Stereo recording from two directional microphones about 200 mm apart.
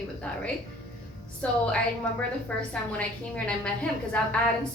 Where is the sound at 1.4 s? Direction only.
5° left (ahead or behind).